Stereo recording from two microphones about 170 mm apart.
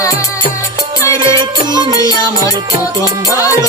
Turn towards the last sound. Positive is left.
turn(degrees=-20)  # may be behind; listen again after turning